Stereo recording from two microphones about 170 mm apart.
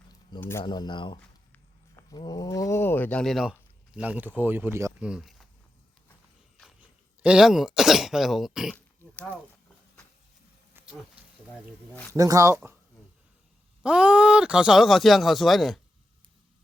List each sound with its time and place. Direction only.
0.3 s speech: 15° left (ahead or behind)
0.6 s speech: 25° left (ahead or behind); by 5.5 s centre (ahead or behind)
7.2 s speech: 5° right (ahead or behind)
10.8 s wild animals: 5° right (ahead or behind)
12.1 s speech: 20° right (ahead or behind)
13.8 s speech: 5° right (ahead or behind)